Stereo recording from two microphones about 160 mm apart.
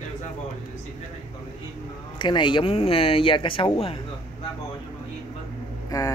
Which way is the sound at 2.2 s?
30° left (ahead or behind).